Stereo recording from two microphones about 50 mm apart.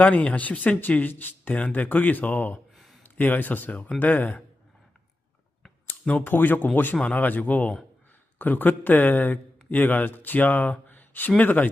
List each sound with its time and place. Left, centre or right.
0.0 s speech: left
2.7 s a sound: centre
3.0 s speech: left
6.2 s a man's voice: left